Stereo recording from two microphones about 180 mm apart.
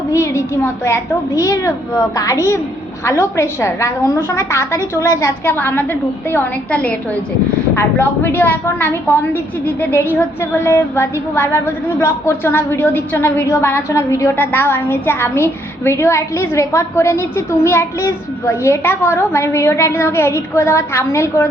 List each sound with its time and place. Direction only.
0.1 s a woman's voice: 15° left (ahead or behind)